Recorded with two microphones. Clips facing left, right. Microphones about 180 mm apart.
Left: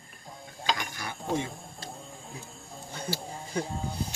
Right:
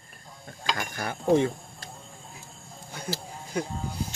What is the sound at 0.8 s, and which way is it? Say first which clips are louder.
Mechanisms: right 5 dB; 55° right (ahead or behind).